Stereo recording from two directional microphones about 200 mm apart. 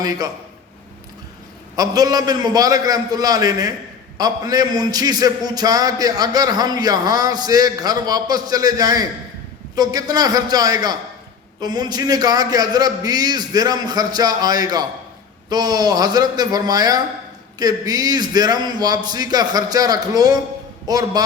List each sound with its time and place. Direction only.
1.7 s a man's voice: 20° right (ahead or behind)